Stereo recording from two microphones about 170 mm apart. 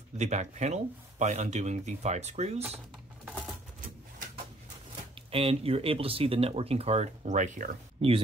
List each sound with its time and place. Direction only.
0.2 s speech: 45° right (ahead or behind)
5.3 s speech: 35° right (ahead or behind)